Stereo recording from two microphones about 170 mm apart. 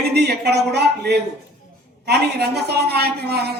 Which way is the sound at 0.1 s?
75° right (ahead or behind).